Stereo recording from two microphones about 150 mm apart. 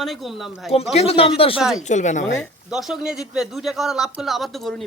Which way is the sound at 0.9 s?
40° left (ahead or behind).